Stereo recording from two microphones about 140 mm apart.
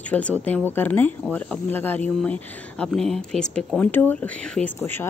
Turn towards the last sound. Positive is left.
turn(degrees=15)  # may be behind; listen again after turning